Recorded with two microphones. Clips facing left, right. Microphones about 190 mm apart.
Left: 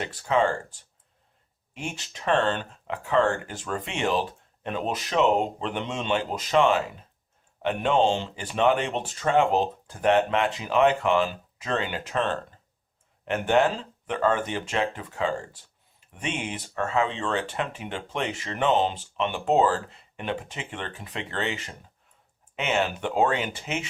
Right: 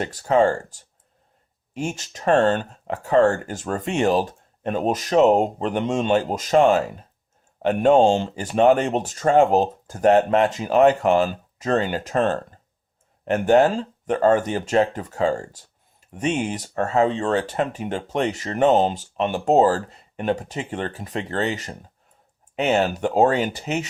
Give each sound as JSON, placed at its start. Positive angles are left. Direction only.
{"t": 0.0, "sound": "speech", "side_deg": -40}